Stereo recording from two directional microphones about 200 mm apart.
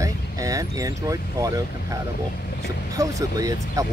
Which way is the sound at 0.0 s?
15° right (ahead or behind).